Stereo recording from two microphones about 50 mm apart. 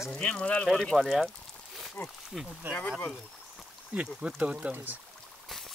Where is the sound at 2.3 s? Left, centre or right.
Centre.